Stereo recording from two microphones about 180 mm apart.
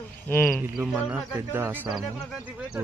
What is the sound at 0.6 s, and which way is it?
Speech, 10° right (ahead or behind).